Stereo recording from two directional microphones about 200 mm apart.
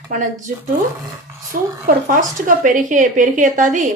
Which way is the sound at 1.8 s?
45° right (ahead or behind).